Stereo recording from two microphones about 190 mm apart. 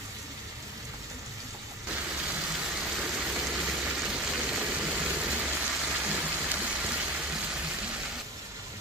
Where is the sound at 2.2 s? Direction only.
5° right (ahead or behind).